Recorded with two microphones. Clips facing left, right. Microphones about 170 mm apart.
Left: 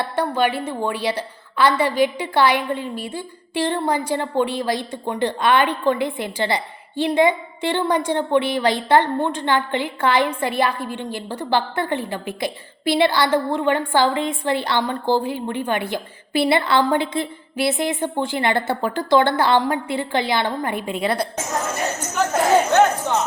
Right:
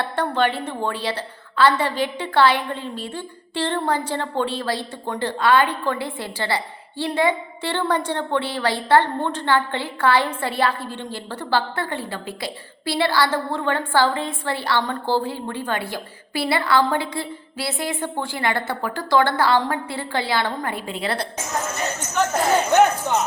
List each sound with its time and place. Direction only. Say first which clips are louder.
0.0 s a woman's voice: left 1 dB; 10° left (ahead or behind)
23.1 s speech: even; 15° right (ahead or behind)